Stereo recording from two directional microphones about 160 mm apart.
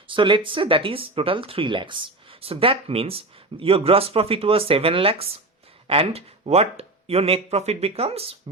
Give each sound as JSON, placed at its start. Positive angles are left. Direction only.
{"t": 0.1, "sound": "speech", "side_deg": -30}